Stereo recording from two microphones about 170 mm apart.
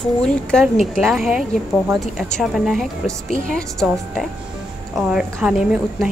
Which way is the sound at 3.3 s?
55° right (ahead or behind).